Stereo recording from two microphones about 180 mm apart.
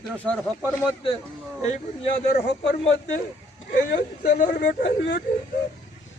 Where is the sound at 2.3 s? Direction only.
65° left (ahead or behind).